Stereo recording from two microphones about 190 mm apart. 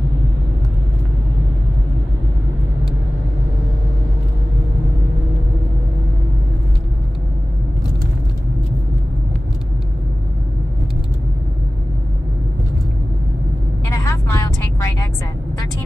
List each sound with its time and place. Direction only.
13.8 s vehicle: 15° left (ahead or behind)